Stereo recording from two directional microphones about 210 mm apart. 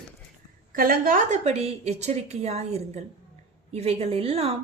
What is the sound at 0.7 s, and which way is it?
A woman's voice, 40° right (ahead or behind).